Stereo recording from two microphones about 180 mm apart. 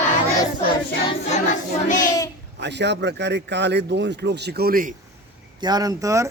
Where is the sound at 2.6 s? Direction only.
70° right (ahead or behind); by 4.9 s 55° right (ahead or behind).